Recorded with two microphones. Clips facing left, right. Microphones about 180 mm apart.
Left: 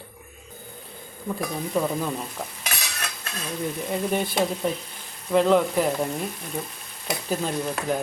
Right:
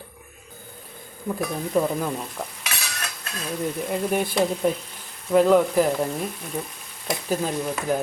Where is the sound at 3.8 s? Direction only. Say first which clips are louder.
Right 1 dB; centre (ahead or behind).